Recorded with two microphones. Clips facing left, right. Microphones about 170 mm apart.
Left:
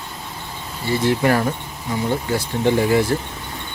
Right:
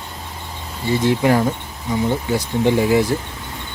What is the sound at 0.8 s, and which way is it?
Speech, 15° right (ahead or behind).